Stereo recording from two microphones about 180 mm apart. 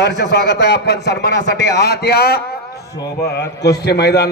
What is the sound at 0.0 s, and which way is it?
A man's voice, 70° left (ahead or behind).